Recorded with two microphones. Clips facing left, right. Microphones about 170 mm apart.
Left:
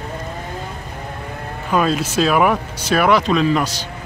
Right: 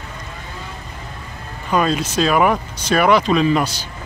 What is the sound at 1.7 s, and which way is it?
Speech, 5° left (ahead or behind).